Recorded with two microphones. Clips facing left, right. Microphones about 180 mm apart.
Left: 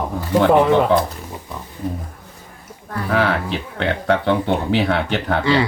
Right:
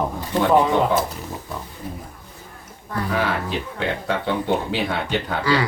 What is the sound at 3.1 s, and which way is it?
Speech, 70° left (ahead or behind).